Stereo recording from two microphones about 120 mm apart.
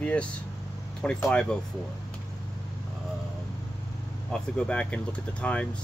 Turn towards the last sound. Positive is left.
turn(degrees=10)  # may be behind; listen again after turning